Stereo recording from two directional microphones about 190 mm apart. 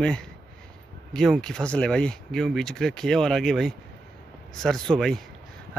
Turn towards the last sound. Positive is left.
turn(degrees=0)  # may be behind; listen again after turning